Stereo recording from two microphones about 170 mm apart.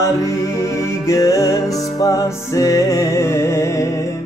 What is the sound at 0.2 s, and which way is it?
Music, 15° left (ahead or behind).